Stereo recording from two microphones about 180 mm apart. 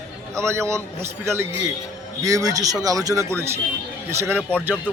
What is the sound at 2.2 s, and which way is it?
A man's voice, 20° right (ahead or behind).